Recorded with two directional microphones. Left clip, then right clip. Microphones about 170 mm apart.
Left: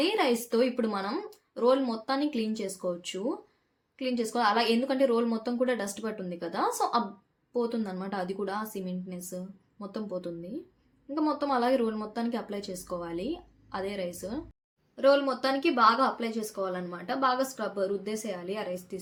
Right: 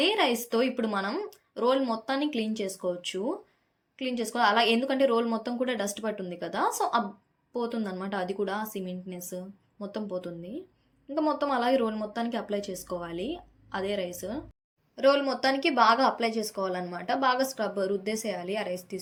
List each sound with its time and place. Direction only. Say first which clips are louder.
0.0 s speech: right 1 dB; 10° right (ahead or behind)
2.3 s speech: right 1 dB; 30° left (ahead or behind)
2.8 s speech: right 1 dB; 10° right (ahead or behind)
4.2 s speech: right 3 dB; 10° right (ahead or behind)
11.1 s a woman's voice: right 1 dB; 10° right (ahead or behind)